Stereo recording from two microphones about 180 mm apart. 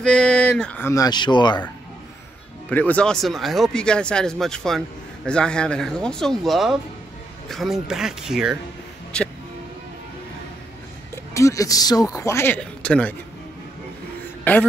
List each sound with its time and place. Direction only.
0.0 s speech: 5° left (ahead or behind); by 1.6 s 25° left (ahead or behind)
2.7 s speech: 10° left (ahead or behind)
11.3 s speech: 15° left (ahead or behind)
14.4 s speech: 10° left (ahead or behind)